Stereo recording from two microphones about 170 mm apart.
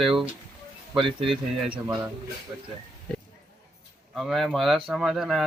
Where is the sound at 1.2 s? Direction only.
Centre (ahead or behind).